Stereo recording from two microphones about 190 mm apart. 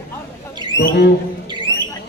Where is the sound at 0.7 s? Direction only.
60° left (ahead or behind).